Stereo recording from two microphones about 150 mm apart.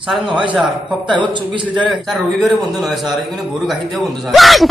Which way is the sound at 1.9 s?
Centre (ahead or behind).